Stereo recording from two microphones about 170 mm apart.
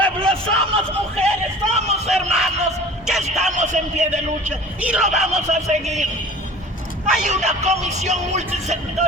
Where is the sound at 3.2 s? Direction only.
40° right (ahead or behind).